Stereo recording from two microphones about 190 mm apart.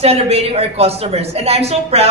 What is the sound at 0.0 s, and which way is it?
A woman's voice, 30° right (ahead or behind).